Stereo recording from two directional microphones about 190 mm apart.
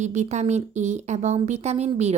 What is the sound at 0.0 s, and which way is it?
Speech, 35° right (ahead or behind).